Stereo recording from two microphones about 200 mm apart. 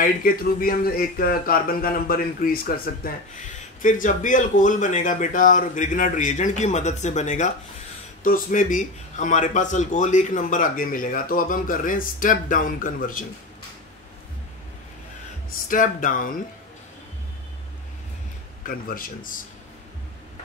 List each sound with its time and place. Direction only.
0.0 s speech: 45° left (ahead or behind)
15.7 s speech: 40° left (ahead or behind)
18.7 s speech: 45° left (ahead or behind)